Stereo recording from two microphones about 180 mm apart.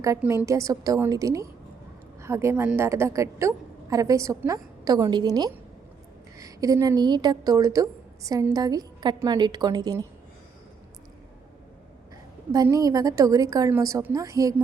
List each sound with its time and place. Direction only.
0.2 s a woman's voice: 15° right (ahead or behind)
12.5 s a woman's voice: 20° right (ahead or behind)